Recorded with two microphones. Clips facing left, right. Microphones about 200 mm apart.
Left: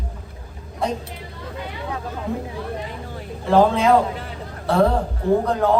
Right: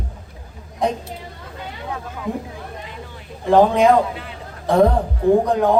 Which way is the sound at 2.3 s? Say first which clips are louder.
Even; 15° right (ahead or behind).